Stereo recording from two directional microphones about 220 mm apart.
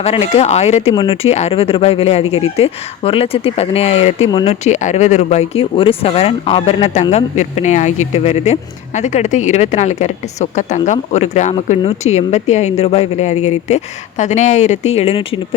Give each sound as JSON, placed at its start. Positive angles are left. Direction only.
{"t": 0.0, "sound": "speech", "side_deg": 30}